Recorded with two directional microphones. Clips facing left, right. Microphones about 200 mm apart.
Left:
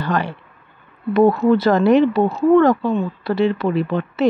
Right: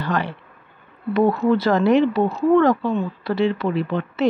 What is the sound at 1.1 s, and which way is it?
A woman's voice, 45° left (ahead or behind).